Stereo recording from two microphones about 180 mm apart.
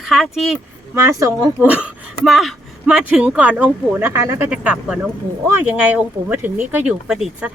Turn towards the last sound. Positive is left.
turn(degrees=-5)  # may be behind; listen again after turning